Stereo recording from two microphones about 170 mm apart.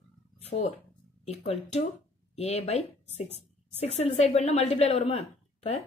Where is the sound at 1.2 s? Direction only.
40° left (ahead or behind).